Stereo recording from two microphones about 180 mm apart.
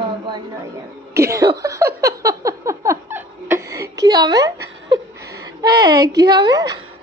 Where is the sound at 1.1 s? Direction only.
15° right (ahead or behind).